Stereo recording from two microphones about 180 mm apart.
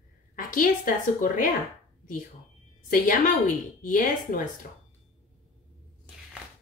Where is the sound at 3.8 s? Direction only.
50° left (ahead or behind).